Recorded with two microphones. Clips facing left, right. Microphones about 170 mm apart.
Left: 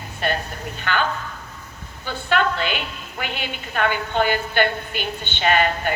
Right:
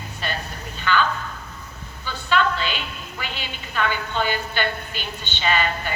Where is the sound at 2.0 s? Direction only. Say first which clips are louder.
Left 1 dB; 55° left (ahead or behind).